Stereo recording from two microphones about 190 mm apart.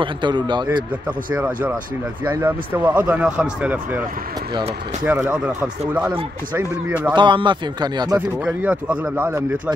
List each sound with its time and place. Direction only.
0.0 s speech: 25° right (ahead or behind)
1.0 s speech: 5° right (ahead or behind)
5.0 s speech: 10° right (ahead or behind)
6.5 s speech: 10° right (ahead or behind)
7.2 s speech: 25° right (ahead or behind)
8.6 s speech: 5° right (ahead or behind)